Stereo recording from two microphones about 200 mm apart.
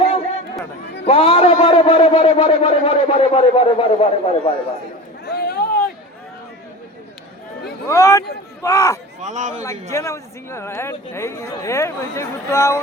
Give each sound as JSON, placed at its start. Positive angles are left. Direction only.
{"t": 1.0, "sound": "a man's voice", "side_deg": 30}
{"t": 5.2, "sound": "a sound", "side_deg": 50}
{"t": 7.9, "sound": "speech", "side_deg": 15}
{"t": 9.2, "sound": "a man's voice", "side_deg": -40}
{"t": 9.9, "sound": "speech", "side_deg": 15}